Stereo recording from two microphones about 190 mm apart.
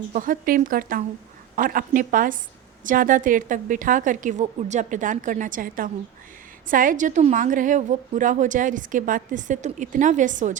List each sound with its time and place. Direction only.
0.1 s a woman's voice: 45° right (ahead or behind)